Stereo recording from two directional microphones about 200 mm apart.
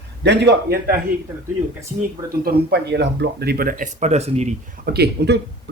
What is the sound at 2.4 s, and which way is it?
Speech, 55° right (ahead or behind).